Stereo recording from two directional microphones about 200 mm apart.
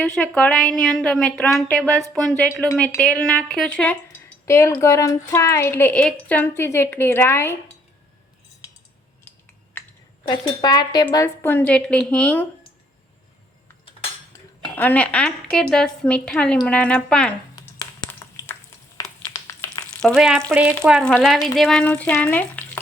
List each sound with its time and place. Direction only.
0.0 s a woman's voice: 5° left (ahead or behind)
10.2 s a woman's voice: 20° left (ahead or behind)
14.8 s a woman's voice: 10° left (ahead or behind)
19.3 s a sound: 15° left (ahead or behind)
20.0 s a woman's voice: centre (ahead or behind)